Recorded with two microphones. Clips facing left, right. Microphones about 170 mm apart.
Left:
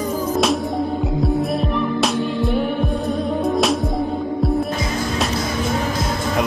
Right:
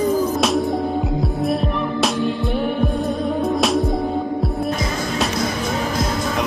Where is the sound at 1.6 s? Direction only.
Centre (ahead or behind).